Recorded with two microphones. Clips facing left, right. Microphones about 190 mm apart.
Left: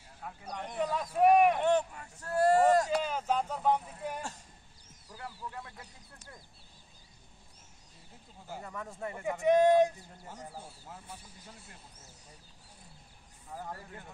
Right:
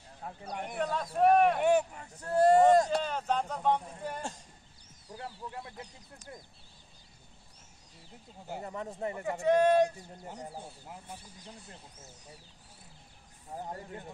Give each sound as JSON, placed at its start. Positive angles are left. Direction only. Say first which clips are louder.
{"t": 0.2, "sound": "a sound", "louder": "right 2 dB", "side_deg": -35}
{"t": 0.7, "sound": "speech", "louder": "left 1 dB", "side_deg": 10}
{"t": 1.6, "sound": "a sound", "louder": "right 2 dB", "side_deg": -10}
{"t": 3.0, "sound": "a sound", "louder": "even", "side_deg": 5}
{"t": 5.1, "sound": "speech", "louder": "right 2 dB", "side_deg": -25}
{"t": 8.5, "sound": "speech", "louder": "right 4 dB", "side_deg": -20}
{"t": 9.2, "sound": "speech", "louder": "left 1 dB", "side_deg": 15}
{"t": 10.2, "sound": "speech", "louder": "right 3 dB", "side_deg": -15}
{"t": 13.5, "sound": "speech", "louder": "right 3 dB", "side_deg": -25}